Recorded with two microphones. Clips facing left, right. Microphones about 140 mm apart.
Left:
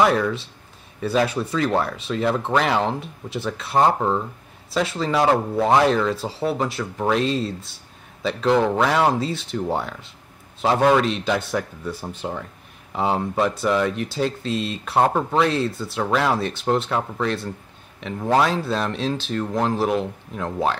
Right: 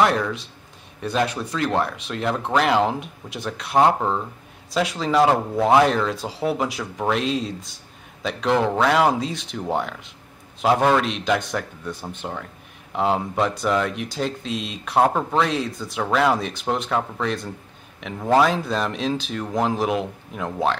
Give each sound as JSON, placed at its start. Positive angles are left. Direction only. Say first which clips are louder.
{"t": 0.0, "sound": "speech", "louder": "left 1 dB", "side_deg": 0}